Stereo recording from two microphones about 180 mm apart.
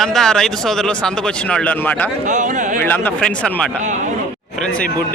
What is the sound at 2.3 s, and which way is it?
Speech, 45° right (ahead or behind).